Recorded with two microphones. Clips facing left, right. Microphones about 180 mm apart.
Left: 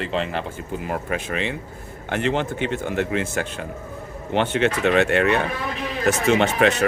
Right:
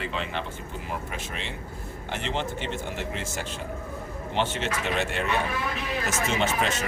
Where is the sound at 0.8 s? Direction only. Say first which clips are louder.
Left 9 dB; 60° left (ahead or behind).